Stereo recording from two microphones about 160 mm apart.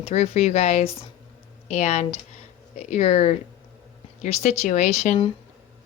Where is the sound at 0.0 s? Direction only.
40° left (ahead or behind).